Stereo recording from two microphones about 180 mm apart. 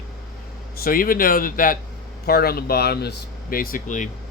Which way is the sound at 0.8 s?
55° left (ahead or behind).